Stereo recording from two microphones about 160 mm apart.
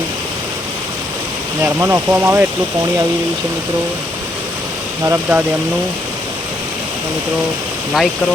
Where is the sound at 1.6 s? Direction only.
15° right (ahead or behind).